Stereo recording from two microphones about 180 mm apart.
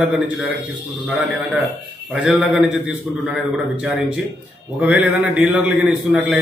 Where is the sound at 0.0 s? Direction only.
5° right (ahead or behind).